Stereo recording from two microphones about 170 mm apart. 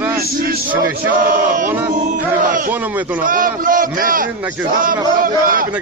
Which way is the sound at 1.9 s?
50° right (ahead or behind).